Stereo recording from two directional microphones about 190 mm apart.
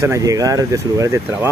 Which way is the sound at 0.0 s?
15° right (ahead or behind).